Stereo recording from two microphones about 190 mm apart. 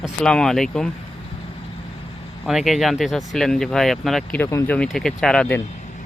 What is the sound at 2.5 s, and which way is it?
Speech, centre (ahead or behind).